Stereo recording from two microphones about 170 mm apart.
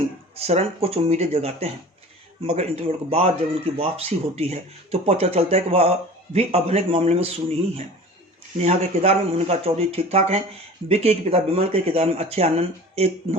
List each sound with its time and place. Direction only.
0.3 s speech: 35° right (ahead or behind)
8.6 s speech: 40° right (ahead or behind)